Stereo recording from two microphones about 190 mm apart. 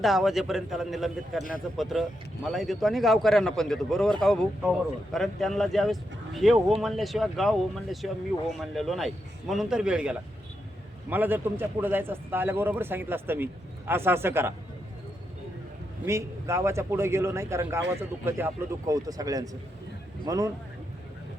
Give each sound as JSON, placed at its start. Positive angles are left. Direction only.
{"t": 0.0, "sound": "speech", "side_deg": 0}
{"t": 16.0, "sound": "speech", "side_deg": -15}